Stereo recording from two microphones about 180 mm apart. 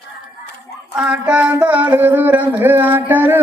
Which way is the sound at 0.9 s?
5° right (ahead or behind).